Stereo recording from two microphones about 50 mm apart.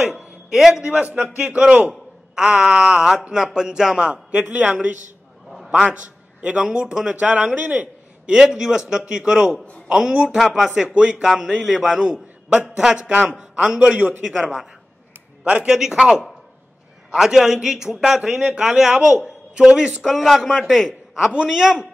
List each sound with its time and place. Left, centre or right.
0.5 s speech: centre
0.8 s a man's voice: right
2.3 s speech: centre
4.1 s speech: right
5.7 s a man's voice: centre
7.1 s a man's voice: right
8.3 s speech: centre
10.7 s a man's voice: right
13.9 s a man's voice: right
15.4 s speech: right
20.0 s a man's voice: centre
21.3 s speech: centre